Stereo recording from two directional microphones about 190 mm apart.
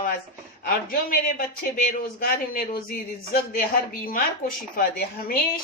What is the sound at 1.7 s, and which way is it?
Speech, 50° left (ahead or behind).